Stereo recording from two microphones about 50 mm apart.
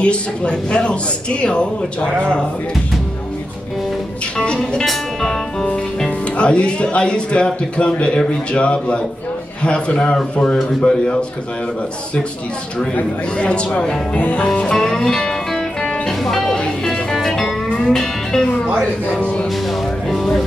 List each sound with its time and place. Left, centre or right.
0.0 s speech: left
4.5 s music: centre
6.0 s speech: left
13.4 s speech: left
14.5 s music: centre
20.1 s vehicle: centre